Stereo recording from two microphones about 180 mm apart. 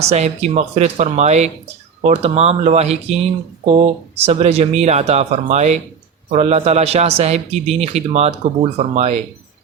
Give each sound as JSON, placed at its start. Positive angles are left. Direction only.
{"t": 0.0, "sound": "speech", "side_deg": -35}